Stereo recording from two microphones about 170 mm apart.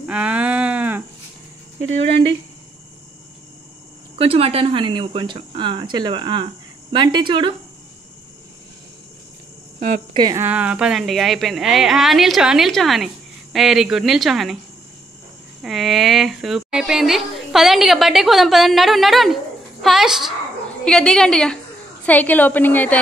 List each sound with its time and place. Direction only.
0.0 s a sound: 5° right (ahead or behind)
4.2 s speech: 35° right (ahead or behind)
9.8 s speech: 50° right (ahead or behind)
10.1 s speech: 25° right (ahead or behind)
10.4 s a woman's voice: 10° right (ahead or behind)
15.6 s a woman's voice: centre (ahead or behind)